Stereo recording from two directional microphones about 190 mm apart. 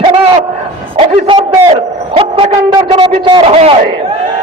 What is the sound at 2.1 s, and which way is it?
A man's voice, 30° right (ahead or behind).